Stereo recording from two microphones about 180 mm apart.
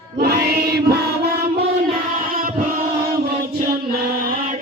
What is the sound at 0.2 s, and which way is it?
Chant, 60° right (ahead or behind).